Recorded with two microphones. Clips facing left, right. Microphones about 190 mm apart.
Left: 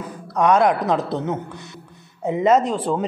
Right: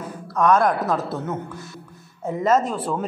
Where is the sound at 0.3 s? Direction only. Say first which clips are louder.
Left 1 dB; 20° left (ahead or behind).